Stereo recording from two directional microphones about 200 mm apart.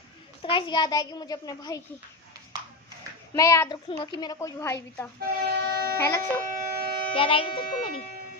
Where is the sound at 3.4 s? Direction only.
15° left (ahead or behind).